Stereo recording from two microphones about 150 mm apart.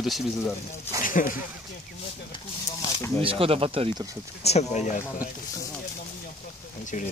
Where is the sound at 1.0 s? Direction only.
65° left (ahead or behind).